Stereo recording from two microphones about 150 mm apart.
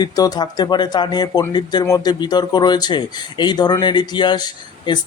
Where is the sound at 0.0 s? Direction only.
25° left (ahead or behind).